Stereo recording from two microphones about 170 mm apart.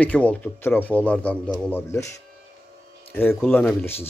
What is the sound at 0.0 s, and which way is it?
A man's voice, 10° left (ahead or behind).